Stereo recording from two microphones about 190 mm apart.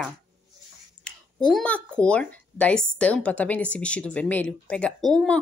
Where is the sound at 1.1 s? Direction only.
5° left (ahead or behind).